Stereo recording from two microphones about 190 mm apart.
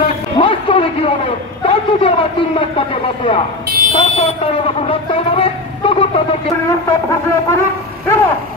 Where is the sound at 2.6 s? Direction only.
30° left (ahead or behind).